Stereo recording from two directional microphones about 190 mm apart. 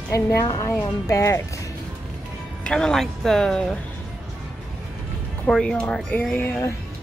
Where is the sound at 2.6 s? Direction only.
5° left (ahead or behind).